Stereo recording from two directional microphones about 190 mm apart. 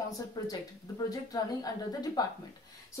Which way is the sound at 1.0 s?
20° left (ahead or behind).